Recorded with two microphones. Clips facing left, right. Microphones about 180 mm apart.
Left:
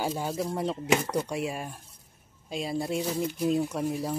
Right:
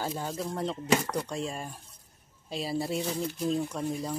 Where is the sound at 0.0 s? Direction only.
10° left (ahead or behind).